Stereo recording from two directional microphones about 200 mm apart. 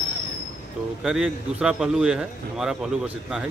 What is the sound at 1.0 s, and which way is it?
A man's voice, 5° right (ahead or behind).